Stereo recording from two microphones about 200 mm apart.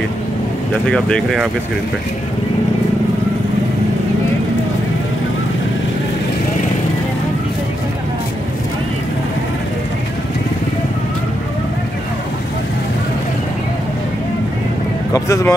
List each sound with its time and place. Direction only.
0.8 s speech: 5° left (ahead or behind)
15.1 s speech: 15° left (ahead or behind)